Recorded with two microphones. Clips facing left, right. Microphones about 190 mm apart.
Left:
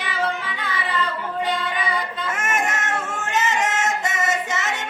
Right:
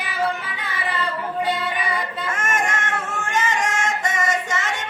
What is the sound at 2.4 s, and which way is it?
Music, 5° left (ahead or behind).